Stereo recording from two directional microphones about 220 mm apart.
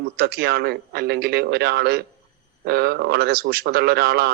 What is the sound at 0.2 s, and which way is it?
Speech, 45° right (ahead or behind).